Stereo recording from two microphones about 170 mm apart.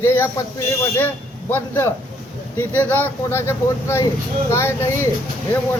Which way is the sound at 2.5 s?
10° left (ahead or behind).